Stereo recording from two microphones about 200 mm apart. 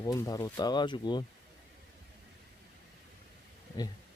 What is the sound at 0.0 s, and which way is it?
Speech, 20° left (ahead or behind).